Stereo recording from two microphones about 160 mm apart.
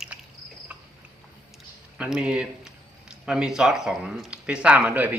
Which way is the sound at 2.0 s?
5° right (ahead or behind).